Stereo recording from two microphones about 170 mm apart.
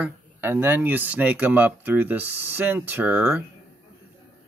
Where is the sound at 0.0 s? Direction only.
15° right (ahead or behind).